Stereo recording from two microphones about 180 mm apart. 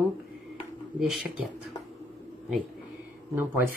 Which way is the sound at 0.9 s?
Centre (ahead or behind).